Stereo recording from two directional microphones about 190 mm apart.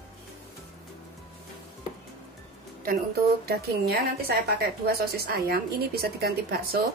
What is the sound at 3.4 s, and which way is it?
A woman's voice, 55° right (ahead or behind).